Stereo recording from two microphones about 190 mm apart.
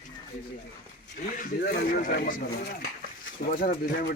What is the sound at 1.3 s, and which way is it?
Speech, 50° left (ahead or behind).